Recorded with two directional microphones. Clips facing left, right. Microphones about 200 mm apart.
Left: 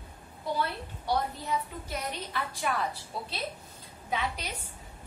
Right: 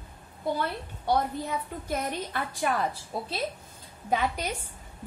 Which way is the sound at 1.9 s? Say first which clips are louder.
Right 5 dB; 45° right (ahead or behind).